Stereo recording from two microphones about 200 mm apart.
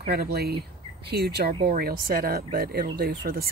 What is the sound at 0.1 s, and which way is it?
Speech, 55° right (ahead or behind).